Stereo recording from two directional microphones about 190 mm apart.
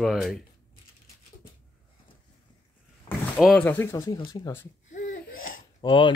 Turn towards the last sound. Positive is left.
turn(degrees=25)  # may be behind; listen again after turning